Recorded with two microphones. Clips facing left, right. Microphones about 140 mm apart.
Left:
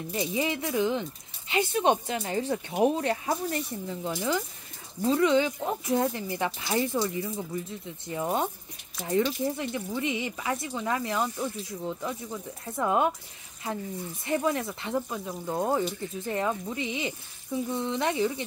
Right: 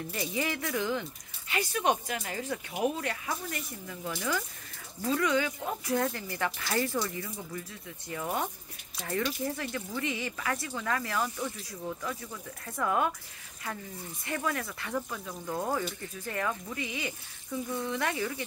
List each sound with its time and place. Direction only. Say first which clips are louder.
0.1 s speech: left 5 dB; 20° left (ahead or behind)
14.2 s speech: left 6 dB; 25° left (ahead or behind)